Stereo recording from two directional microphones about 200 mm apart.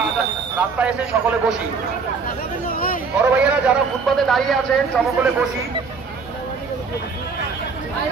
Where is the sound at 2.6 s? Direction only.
45° left (ahead or behind).